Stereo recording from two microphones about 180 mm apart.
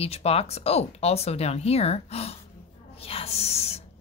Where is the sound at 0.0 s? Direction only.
35° left (ahead or behind).